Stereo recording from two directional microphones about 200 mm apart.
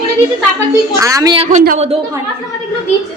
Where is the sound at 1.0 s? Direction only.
15° right (ahead or behind).